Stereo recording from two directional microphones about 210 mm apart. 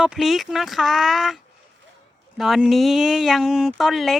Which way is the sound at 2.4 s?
Centre (ahead or behind).